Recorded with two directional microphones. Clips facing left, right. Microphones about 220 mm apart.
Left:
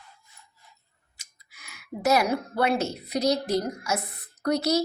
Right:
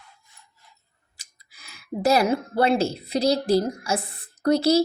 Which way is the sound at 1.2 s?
35° right (ahead or behind).